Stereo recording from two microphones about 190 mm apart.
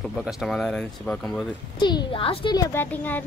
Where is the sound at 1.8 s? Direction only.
25° left (ahead or behind).